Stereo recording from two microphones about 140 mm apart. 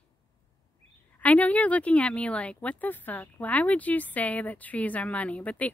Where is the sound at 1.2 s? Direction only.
10° left (ahead or behind).